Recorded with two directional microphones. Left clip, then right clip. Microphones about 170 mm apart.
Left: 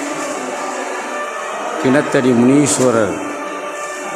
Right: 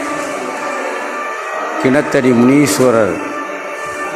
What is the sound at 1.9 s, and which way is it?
Speech, 10° right (ahead or behind).